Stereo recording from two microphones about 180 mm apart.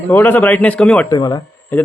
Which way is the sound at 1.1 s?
20° left (ahead or behind).